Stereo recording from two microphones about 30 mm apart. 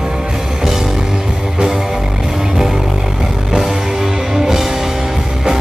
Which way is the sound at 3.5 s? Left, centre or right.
Centre.